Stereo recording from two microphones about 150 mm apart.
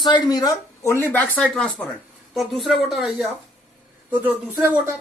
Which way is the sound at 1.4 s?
5° left (ahead or behind).